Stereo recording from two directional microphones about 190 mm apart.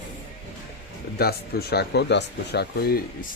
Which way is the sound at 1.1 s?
55° left (ahead or behind).